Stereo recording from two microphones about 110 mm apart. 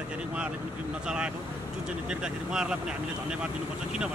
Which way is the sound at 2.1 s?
5° right (ahead or behind).